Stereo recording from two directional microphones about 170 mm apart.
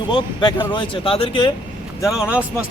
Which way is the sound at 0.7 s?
30° left (ahead or behind).